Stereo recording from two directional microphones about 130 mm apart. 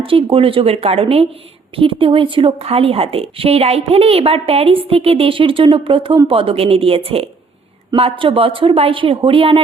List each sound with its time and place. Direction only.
0.0 s a woman's voice: 45° right (ahead or behind)